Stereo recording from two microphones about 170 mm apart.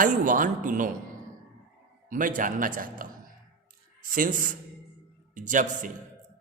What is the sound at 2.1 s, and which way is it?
A man's voice, 50° right (ahead or behind).